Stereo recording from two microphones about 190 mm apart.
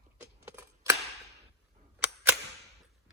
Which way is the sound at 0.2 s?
15° right (ahead or behind).